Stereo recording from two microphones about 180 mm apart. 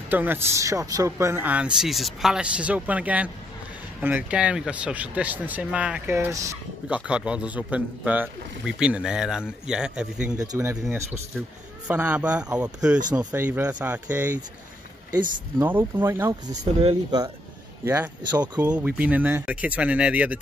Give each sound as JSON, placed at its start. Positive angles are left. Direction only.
{"t": 0.1, "sound": "speech", "side_deg": -10}
{"t": 7.1, "sound": "speech", "side_deg": -5}
{"t": 10.3, "sound": "speech", "side_deg": -20}
{"t": 17.8, "sound": "speech", "side_deg": -10}